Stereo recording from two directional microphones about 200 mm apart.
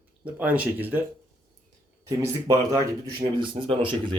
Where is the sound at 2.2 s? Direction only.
15° right (ahead or behind).